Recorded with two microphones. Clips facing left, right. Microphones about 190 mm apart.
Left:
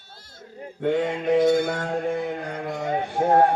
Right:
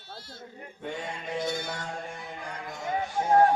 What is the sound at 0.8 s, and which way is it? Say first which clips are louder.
Mantra: left 13 dB; 65° left (ahead or behind).